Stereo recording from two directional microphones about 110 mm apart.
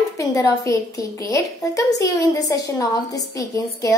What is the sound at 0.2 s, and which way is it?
A woman's voice, 35° left (ahead or behind).